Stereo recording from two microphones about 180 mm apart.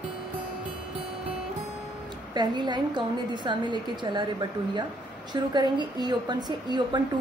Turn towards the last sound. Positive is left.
turn(degrees=-25)  # may be behind; listen again after turning